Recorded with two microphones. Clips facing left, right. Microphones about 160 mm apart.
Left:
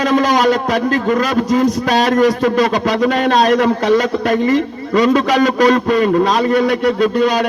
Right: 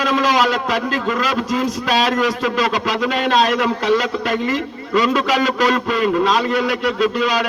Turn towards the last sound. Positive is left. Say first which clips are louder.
# left 4 dB
turn(degrees=40)  # may be behind; listen again after turning